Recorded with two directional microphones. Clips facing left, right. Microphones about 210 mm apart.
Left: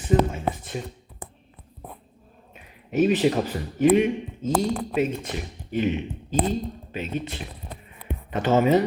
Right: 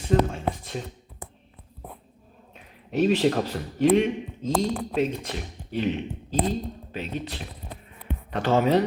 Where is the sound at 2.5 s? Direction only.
5° left (ahead or behind).